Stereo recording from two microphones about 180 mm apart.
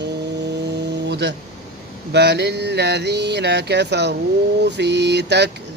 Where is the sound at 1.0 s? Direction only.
75° right (ahead or behind).